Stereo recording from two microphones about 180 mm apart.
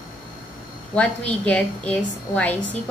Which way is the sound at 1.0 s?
10° left (ahead or behind).